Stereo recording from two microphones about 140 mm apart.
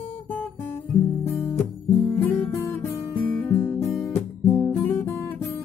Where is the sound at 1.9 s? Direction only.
20° left (ahead or behind).